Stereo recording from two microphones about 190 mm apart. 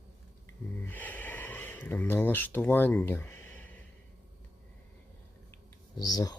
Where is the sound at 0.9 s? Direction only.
10° left (ahead or behind).